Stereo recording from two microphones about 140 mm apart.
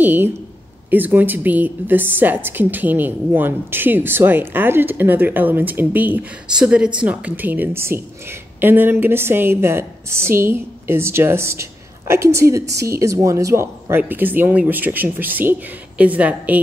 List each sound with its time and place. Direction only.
0.0 s a woman's voice: 15° right (ahead or behind)